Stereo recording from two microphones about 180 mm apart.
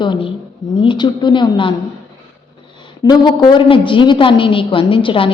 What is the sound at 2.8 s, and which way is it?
A woman's voice, 25° left (ahead or behind).